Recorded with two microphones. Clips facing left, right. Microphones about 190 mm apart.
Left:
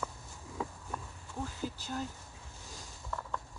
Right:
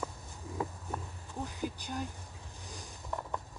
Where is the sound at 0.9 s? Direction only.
15° right (ahead or behind).